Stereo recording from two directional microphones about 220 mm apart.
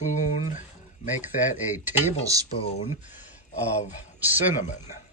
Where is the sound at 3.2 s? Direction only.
30° left (ahead or behind).